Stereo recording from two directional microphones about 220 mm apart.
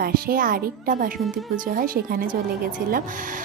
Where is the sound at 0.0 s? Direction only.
40° right (ahead or behind).